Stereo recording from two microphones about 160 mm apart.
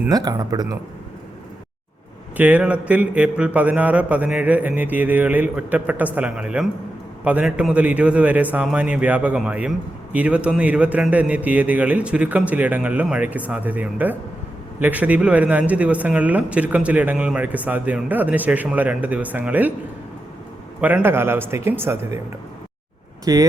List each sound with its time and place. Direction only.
0.1 s speech: 25° right (ahead or behind)
2.4 s a man's voice: 10° right (ahead or behind)
20.8 s a man's voice: 10° right (ahead or behind)
23.2 s speech: 20° right (ahead or behind)